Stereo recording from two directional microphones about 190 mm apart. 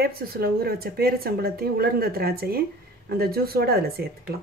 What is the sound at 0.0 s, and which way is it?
Speech, 55° right (ahead or behind).